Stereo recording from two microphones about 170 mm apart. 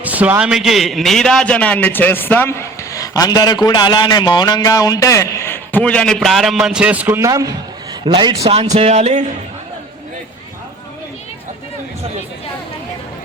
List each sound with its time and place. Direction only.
0.0 s a man's voice: 10° right (ahead or behind); by 8.5 s 25° right (ahead or behind)
8.7 s speech: 40° right (ahead or behind)